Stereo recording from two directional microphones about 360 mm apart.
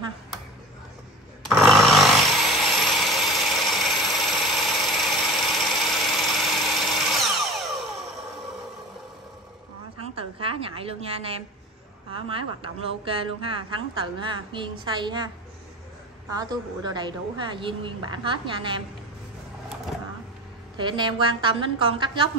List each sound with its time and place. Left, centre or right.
1.4 s chainsaw: centre
10.0 s a sound: centre
12.1 s a woman's voice: centre
16.3 s a woman's voice: centre
20.7 s a woman's voice: centre